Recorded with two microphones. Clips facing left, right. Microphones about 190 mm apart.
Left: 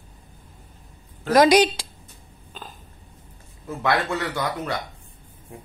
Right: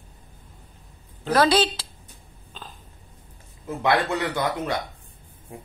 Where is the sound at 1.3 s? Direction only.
15° left (ahead or behind).